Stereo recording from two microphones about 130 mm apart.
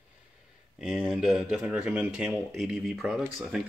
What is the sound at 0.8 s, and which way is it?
Speech, 5° right (ahead or behind).